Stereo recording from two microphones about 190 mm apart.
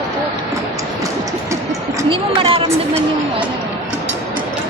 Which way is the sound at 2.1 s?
30° right (ahead or behind).